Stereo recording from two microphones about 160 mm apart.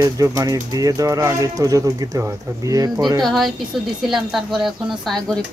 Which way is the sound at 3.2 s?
Centre (ahead or behind).